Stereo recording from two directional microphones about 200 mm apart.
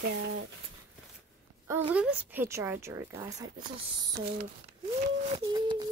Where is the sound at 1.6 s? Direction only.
10° right (ahead or behind).